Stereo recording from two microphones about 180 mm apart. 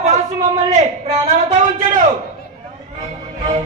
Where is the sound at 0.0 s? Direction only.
40° right (ahead or behind).